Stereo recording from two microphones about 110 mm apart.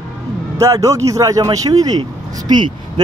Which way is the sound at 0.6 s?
30° right (ahead or behind).